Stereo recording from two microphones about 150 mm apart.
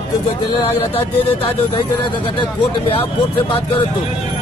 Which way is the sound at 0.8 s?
40° left (ahead or behind).